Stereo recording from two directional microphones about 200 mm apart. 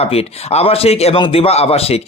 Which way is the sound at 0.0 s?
30° left (ahead or behind).